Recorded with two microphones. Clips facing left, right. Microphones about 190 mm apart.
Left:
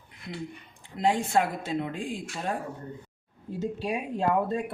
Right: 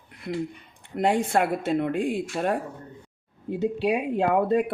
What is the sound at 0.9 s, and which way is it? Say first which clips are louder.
Speech: right 3 dB; 65° right (ahead or behind).